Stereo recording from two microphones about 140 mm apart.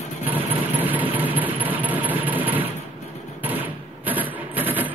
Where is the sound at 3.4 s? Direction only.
10° right (ahead or behind).